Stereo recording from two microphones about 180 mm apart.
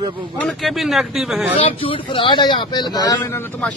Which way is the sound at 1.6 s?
30° left (ahead or behind).